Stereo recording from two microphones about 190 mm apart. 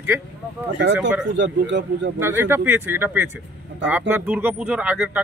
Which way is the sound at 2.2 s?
10° right (ahead or behind).